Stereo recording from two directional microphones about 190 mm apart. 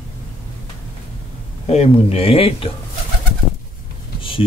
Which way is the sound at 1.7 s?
35° left (ahead or behind).